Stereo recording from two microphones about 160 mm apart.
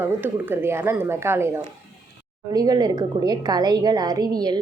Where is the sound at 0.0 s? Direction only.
15° right (ahead or behind).